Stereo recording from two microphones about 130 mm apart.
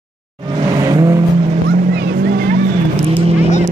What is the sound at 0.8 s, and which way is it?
Vehicle, 25° right (ahead or behind).